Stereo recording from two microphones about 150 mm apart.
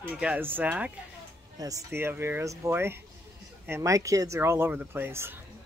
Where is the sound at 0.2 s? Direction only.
10° right (ahead or behind).